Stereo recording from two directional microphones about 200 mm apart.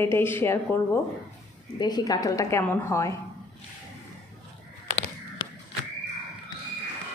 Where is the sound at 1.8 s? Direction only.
20° left (ahead or behind).